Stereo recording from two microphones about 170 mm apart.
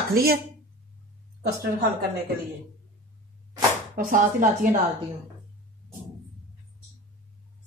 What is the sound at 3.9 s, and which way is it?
Speech, 55° right (ahead or behind).